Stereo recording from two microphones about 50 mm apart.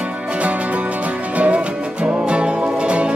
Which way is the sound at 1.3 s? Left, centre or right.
Right.